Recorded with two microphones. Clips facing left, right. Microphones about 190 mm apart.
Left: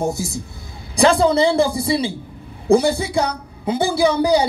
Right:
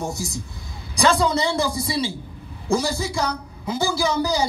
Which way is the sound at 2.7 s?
60° left (ahead or behind).